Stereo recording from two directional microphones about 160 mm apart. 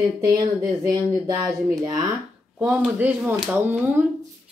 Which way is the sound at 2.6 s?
10° right (ahead or behind).